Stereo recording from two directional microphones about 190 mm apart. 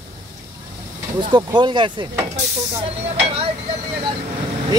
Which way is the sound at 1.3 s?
25° right (ahead or behind).